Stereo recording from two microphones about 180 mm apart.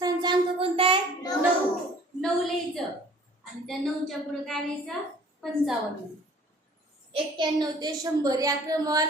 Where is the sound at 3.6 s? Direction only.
Centre (ahead or behind).